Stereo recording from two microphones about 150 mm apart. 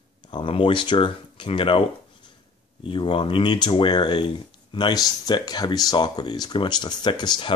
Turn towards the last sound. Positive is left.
turn(degrees=30)  # may be behind; listen again after turning